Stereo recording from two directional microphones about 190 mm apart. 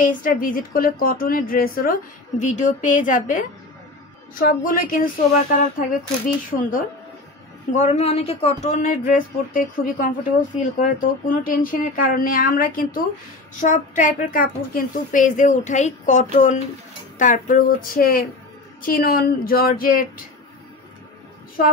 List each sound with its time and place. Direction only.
0.0 s speech: 45° left (ahead or behind)
7.7 s a woman's voice: 35° left (ahead or behind)